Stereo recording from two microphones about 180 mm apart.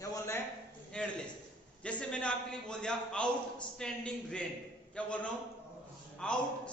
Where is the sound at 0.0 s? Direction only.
20° left (ahead or behind).